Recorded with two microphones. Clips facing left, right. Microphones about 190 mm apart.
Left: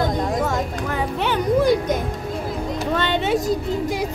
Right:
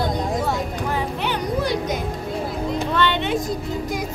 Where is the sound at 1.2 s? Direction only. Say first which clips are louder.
Left 5 dB; 50° left (ahead or behind).